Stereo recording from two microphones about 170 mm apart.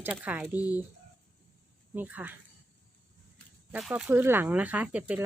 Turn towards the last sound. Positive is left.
turn(degrees=-10)  # may be behind; listen again after turning